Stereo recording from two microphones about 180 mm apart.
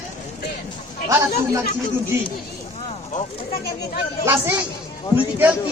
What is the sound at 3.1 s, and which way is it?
Speech, 45° left (ahead or behind).